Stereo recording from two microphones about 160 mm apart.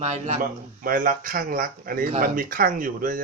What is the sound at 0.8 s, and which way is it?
Speech, 60° right (ahead or behind).